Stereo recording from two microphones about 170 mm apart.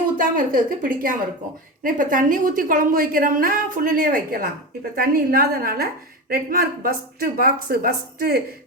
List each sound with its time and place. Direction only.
0.2 s a woman's voice: 55° right (ahead or behind)